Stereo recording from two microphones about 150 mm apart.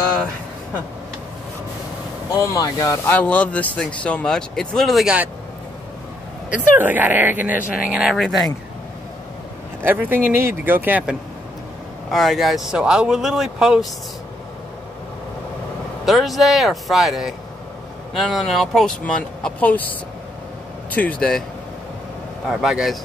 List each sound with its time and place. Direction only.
2.4 s speech: 20° left (ahead or behind)
3.1 s speech: 10° left (ahead or behind); by 5.3 s 5° right (ahead or behind)
6.8 s speech: 10° right (ahead or behind)
9.8 s speech: 15° right (ahead or behind)
12.1 s speech: centre (ahead or behind)
16.1 s speech: centre (ahead or behind)
20.9 s speech: 10° left (ahead or behind)
22.5 s speech: 5° right (ahead or behind)